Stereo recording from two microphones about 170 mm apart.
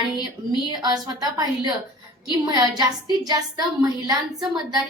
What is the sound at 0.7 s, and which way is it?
A woman's voice, 25° right (ahead or behind).